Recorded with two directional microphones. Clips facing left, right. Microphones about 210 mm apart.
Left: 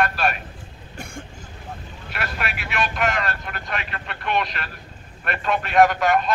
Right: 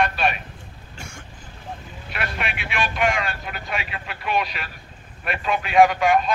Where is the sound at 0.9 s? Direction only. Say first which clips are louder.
Left 5 dB; 55° left (ahead or behind).